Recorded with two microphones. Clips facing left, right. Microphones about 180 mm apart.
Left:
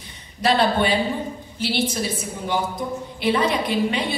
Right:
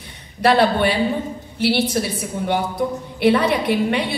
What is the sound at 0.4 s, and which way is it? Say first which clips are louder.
A woman's voice: right 3 dB; 65° right (ahead or behind).